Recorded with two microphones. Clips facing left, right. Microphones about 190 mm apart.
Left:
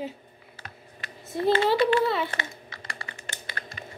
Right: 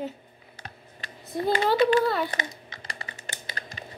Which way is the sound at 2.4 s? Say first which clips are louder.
Right 1 dB; 20° right (ahead or behind).